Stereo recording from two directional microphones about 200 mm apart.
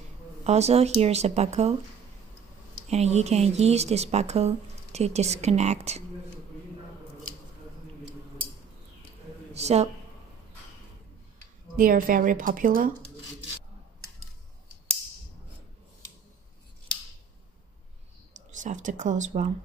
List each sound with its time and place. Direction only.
0.4 s a woman's voice: 35° right (ahead or behind)
2.9 s a woman's voice: 35° right (ahead or behind)
9.5 s a woman's voice: 35° right (ahead or behind)
11.3 s speech: 45° right (ahead or behind)
18.3 s speech: 40° right (ahead or behind)